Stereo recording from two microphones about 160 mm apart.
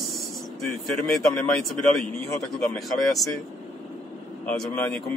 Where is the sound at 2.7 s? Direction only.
Centre (ahead or behind).